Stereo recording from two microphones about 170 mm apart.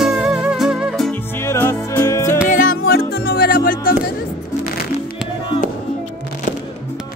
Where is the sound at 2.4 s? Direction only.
55° left (ahead or behind).